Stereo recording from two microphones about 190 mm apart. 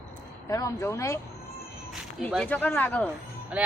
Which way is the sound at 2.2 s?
5° left (ahead or behind).